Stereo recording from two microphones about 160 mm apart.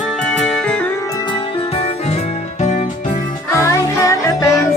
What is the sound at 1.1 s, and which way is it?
Music, 30° left (ahead or behind).